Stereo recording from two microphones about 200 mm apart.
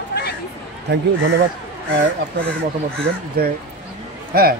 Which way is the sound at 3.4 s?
50° right (ahead or behind).